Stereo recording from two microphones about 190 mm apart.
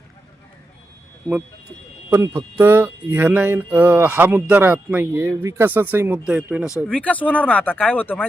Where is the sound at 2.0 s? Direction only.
15° right (ahead or behind).